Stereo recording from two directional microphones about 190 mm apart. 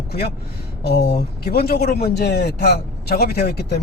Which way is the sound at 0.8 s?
55° left (ahead or behind).